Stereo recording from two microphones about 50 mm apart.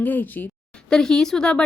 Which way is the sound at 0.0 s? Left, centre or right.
Left.